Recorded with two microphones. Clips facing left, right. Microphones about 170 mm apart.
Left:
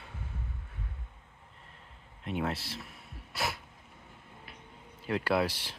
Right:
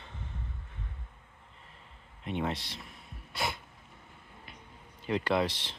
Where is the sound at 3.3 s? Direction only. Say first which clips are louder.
Even; 5° left (ahead or behind).